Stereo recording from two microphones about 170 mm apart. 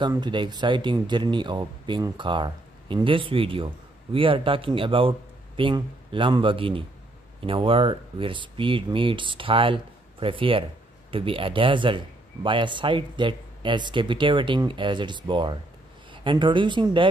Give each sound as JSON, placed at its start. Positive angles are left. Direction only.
{"t": 0.0, "sound": "speech", "side_deg": -25}